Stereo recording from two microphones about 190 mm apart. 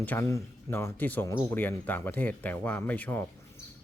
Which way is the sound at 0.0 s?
10° left (ahead or behind).